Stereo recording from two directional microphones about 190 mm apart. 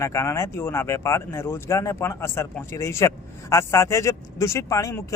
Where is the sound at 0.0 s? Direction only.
15° left (ahead or behind).